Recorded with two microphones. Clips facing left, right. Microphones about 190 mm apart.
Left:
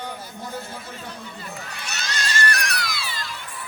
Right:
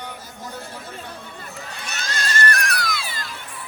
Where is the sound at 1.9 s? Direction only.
50° right (ahead or behind).